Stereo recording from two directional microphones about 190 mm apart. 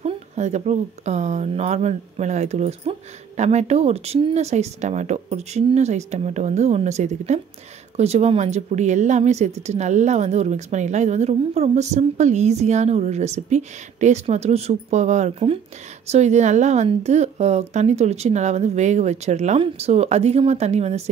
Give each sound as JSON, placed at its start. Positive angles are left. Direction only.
{"t": 0.0, "sound": "speech", "side_deg": -35}